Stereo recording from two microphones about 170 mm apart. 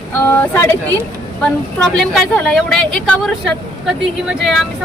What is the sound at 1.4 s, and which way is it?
A woman's voice, 5° left (ahead or behind).